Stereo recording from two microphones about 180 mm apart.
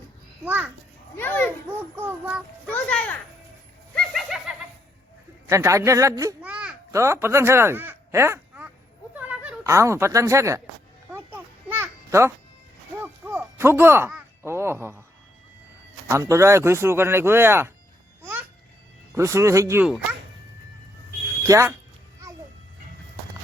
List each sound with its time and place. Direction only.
0.4 s speech: 10° right (ahead or behind)
1.1 s children playing: 10° left (ahead or behind)
2.0 s speech: 10° right (ahead or behind)
2.6 s a child's voice: 10° left (ahead or behind)
3.9 s bird: centre (ahead or behind)
5.5 s a child's voice: 15° right (ahead or behind)
11.1 s children playing: 10° right (ahead or behind)
13.0 s a sound: 10° right (ahead or behind)
14.4 s speech: 15° right (ahead or behind)
16.0 s speech: 15° right (ahead or behind)
18.2 s babbling: 10° right (ahead or behind)
19.1 s speech: 15° right (ahead or behind)
21.4 s speech: 15° right (ahead or behind)